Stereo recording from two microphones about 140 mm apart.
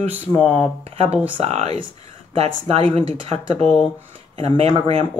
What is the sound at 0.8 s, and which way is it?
Speech, 45° right (ahead or behind).